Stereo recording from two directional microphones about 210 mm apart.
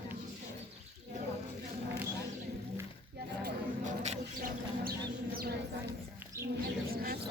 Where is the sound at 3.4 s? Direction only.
35° right (ahead or behind).